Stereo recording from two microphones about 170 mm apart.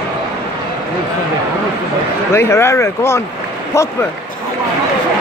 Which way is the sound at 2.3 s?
15° left (ahead or behind).